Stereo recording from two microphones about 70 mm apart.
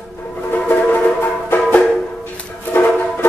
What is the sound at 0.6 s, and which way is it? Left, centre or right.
Music, left.